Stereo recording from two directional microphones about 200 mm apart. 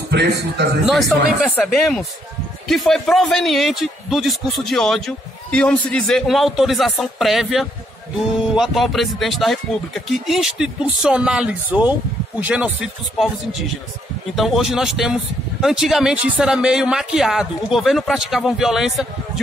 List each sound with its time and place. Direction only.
0.1 s a man's voice: 55° right (ahead or behind)
0.8 s speech: centre (ahead or behind)